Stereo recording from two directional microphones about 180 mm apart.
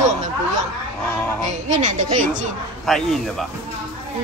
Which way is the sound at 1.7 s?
40° right (ahead or behind).